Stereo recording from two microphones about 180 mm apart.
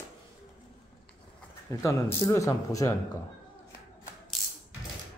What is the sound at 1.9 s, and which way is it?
Speech, 15° left (ahead or behind).